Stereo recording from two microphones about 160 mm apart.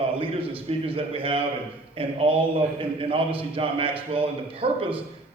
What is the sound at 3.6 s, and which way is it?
A man's voice, 35° right (ahead or behind).